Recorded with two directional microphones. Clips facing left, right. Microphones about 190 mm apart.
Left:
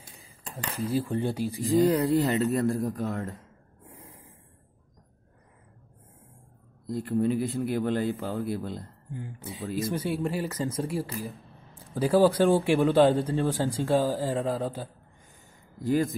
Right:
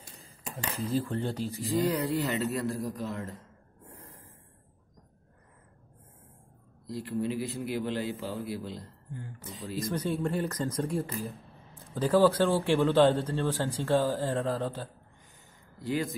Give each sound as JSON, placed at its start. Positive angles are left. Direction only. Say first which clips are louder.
{"t": 0.8, "sound": "speech", "louder": "left 3 dB", "side_deg": 15}
{"t": 1.9, "sound": "speech", "louder": "left 6 dB", "side_deg": 45}
{"t": 3.9, "sound": "snort", "louder": "left 2 dB", "side_deg": 10}
{"t": 6.9, "sound": "speech", "louder": "left 6 dB", "side_deg": 50}
{"t": 9.1, "sound": "speech", "louder": "left 4 dB", "side_deg": 15}
{"t": 15.8, "sound": "speech", "louder": "left 6 dB", "side_deg": 45}